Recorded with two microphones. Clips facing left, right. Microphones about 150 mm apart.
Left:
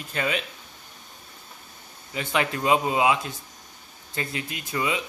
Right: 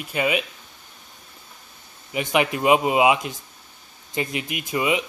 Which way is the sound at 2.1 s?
15° right (ahead or behind).